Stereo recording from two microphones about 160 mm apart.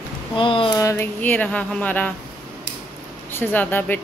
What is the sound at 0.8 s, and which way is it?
A woman's voice, 15° left (ahead or behind).